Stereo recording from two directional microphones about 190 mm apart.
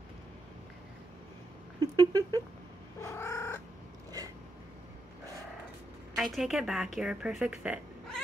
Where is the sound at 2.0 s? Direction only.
20° right (ahead or behind).